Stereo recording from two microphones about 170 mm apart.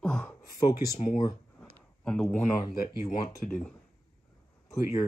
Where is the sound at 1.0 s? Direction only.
25° left (ahead or behind).